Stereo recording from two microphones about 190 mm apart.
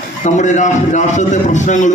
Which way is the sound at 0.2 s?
40° left (ahead or behind).